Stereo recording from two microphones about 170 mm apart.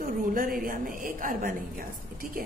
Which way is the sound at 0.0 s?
55° right (ahead or behind).